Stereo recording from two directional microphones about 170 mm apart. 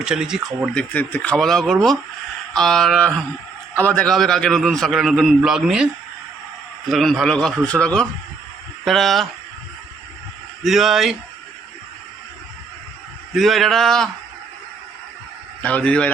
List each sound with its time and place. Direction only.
0.0 s a man's voice: 5° right (ahead or behind)
10.6 s a man's voice: centre (ahead or behind)
13.3 s a man's voice: centre (ahead or behind)
15.6 s speech: 10° left (ahead or behind)